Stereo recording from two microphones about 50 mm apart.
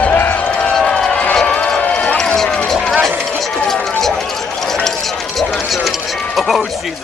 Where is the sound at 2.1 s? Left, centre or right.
Centre.